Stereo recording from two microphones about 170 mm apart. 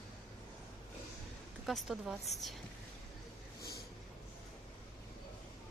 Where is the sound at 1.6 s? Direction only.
Centre (ahead or behind).